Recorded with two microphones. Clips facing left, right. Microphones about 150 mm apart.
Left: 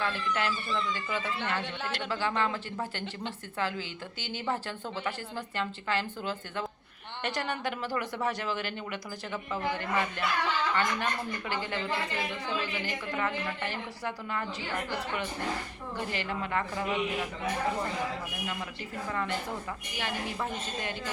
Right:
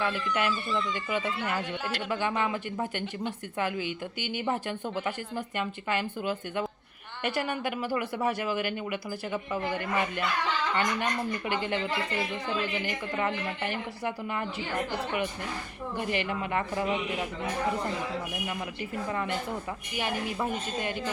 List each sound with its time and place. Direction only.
0.0 s speech: 15° right (ahead or behind)
12.8 s speech: 20° right (ahead or behind)
16.0 s speech: 15° right (ahead or behind)
20.0 s speech: 15° right (ahead or behind)